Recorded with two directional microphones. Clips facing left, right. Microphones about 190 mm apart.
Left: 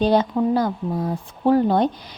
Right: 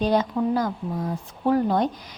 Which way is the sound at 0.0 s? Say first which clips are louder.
Left 4 dB; 30° left (ahead or behind).